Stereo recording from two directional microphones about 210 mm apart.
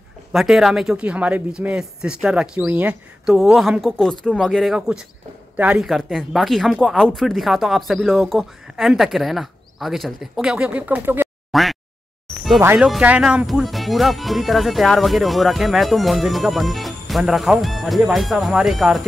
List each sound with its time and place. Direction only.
0.3 s speech: centre (ahead or behind)